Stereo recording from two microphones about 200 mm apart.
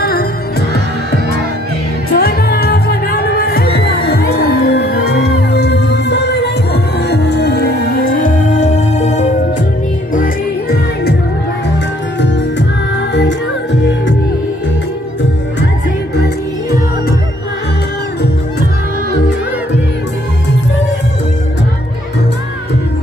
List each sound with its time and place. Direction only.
0.0 s music: 50° left (ahead or behind)
2.1 s music: 50° left (ahead or behind)
10.1 s music: 45° left (ahead or behind)